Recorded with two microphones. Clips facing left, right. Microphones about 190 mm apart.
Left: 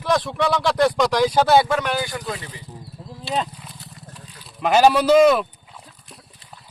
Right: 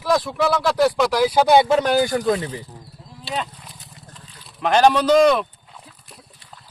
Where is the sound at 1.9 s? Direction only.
40° right (ahead or behind).